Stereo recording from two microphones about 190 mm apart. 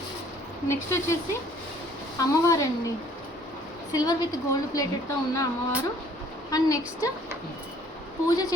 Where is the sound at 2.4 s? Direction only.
15° left (ahead or behind).